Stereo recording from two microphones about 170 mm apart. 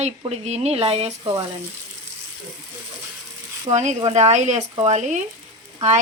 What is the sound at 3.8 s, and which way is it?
Speech, 40° right (ahead or behind).